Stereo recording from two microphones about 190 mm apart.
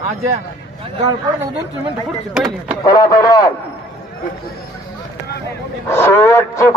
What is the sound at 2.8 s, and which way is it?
Speech, 20° left (ahead or behind).